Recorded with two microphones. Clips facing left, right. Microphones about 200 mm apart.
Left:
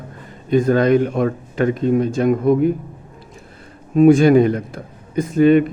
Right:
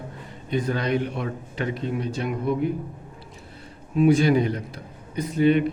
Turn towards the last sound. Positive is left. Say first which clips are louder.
# left 7 dB
turn(degrees=50)  # may be behind; listen again after turning